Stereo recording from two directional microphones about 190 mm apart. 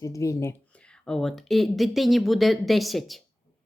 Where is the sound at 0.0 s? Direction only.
15° left (ahead or behind).